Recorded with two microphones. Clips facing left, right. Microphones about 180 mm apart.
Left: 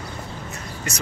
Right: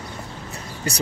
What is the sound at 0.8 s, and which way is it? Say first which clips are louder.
Speech: right 5 dB; 35° right (ahead or behind).